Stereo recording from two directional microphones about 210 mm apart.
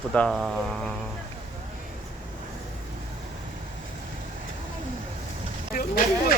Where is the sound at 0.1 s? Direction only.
Centre (ahead or behind).